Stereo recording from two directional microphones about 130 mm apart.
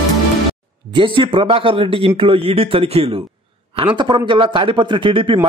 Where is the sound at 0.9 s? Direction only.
40° right (ahead or behind).